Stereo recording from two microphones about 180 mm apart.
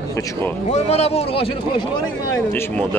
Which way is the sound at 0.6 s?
35° left (ahead or behind).